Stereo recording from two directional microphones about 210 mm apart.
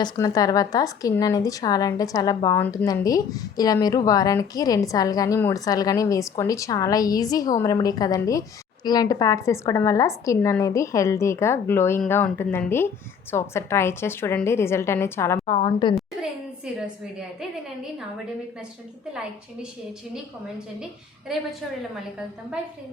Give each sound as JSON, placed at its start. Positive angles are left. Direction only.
{"t": 0.0, "sound": "speech", "side_deg": 15}
{"t": 15.4, "sound": "a woman's voice", "side_deg": 25}